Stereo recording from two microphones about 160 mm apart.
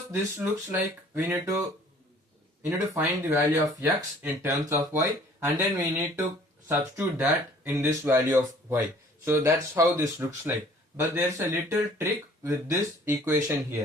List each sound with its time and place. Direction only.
0.1 s speech: 15° right (ahead or behind)
2.6 s speech: 15° right (ahead or behind)